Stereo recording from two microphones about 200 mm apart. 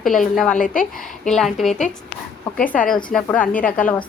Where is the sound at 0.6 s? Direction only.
40° left (ahead or behind).